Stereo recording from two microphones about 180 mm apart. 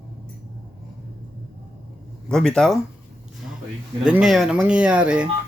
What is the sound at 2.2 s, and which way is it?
Speech, 5° left (ahead or behind).